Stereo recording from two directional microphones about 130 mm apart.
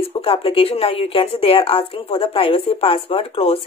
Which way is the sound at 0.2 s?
45° left (ahead or behind).